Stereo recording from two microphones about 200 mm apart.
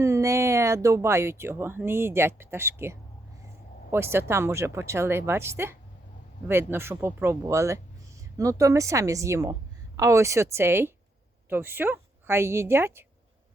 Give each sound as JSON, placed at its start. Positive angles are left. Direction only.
{"t": 0.0, "sound": "a woman's voice", "side_deg": -15}